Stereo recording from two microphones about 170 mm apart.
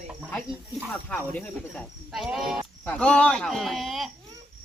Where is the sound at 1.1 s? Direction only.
5° left (ahead or behind).